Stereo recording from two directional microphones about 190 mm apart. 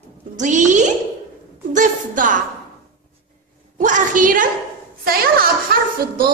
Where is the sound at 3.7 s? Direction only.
40° right (ahead or behind).